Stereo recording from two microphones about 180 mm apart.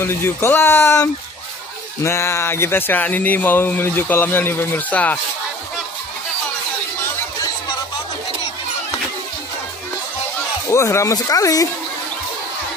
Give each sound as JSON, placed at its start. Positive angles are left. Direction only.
{"t": 0.0, "sound": "speech", "side_deg": 15}
{"t": 10.7, "sound": "speech", "side_deg": 15}